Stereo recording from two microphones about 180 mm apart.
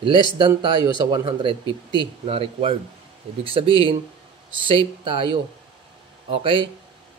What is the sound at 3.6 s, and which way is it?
Speech, 20° left (ahead or behind).